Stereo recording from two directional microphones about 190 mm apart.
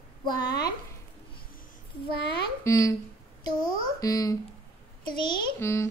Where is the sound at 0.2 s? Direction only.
20° left (ahead or behind).